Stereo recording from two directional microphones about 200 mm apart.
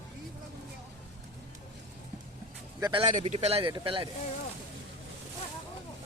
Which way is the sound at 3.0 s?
35° right (ahead or behind).